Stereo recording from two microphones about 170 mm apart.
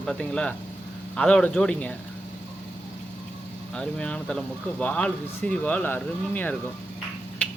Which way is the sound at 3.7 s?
5° left (ahead or behind).